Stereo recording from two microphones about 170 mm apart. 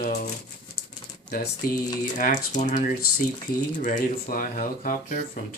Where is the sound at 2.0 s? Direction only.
50° left (ahead or behind).